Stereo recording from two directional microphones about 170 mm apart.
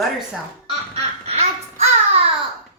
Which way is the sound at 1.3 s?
40° right (ahead or behind).